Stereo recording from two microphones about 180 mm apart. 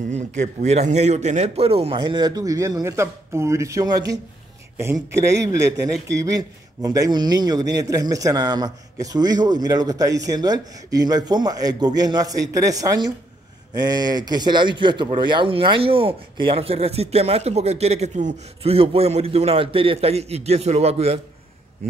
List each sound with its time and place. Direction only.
0.1 s a man's voice: 40° right (ahead or behind)